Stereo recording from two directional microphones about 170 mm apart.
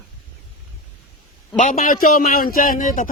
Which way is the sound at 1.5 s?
45° left (ahead or behind).